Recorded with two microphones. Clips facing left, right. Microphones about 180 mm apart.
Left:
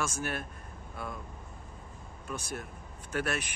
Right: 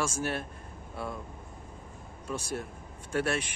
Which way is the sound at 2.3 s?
30° right (ahead or behind).